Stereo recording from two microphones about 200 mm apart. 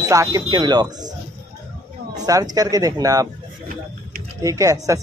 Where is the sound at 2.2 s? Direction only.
20° right (ahead or behind).